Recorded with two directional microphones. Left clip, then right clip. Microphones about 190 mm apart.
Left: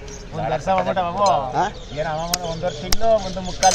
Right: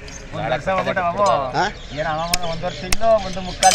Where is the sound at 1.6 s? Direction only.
10° right (ahead or behind).